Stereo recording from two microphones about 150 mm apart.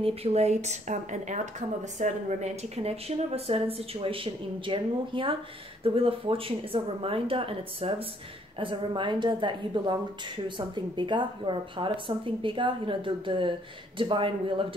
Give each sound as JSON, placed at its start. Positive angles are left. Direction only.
{"t": 0.0, "sound": "speech", "side_deg": -40}